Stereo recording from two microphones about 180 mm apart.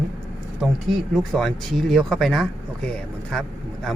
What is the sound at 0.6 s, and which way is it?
Speech, centre (ahead or behind).